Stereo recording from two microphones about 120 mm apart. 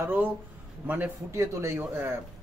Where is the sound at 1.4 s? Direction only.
25° right (ahead or behind).